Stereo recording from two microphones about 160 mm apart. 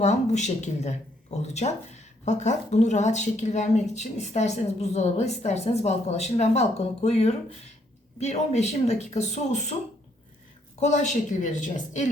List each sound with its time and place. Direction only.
0.0 s a woman's voice: 45° left (ahead or behind)
10.8 s a woman's voice: 45° left (ahead or behind)